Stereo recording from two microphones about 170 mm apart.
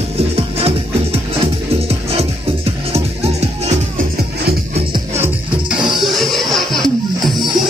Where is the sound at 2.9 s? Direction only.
35° right (ahead or behind).